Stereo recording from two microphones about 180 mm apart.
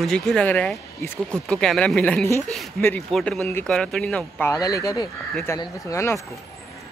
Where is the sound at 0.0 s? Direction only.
Centre (ahead or behind).